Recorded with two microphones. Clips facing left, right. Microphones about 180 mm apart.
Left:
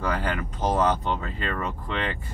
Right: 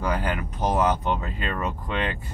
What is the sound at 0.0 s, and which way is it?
Speech, 15° right (ahead or behind).